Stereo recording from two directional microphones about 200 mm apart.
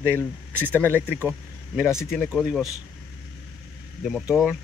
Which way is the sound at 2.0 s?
Centre (ahead or behind).